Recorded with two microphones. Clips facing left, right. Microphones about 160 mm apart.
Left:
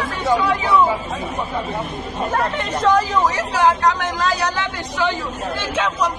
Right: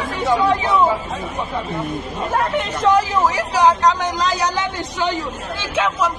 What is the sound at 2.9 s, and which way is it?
Speech, 5° right (ahead or behind).